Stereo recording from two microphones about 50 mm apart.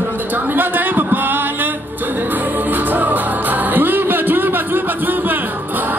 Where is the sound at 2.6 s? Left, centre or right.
Right.